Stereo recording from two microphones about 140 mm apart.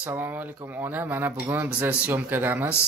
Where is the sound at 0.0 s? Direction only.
15° right (ahead or behind).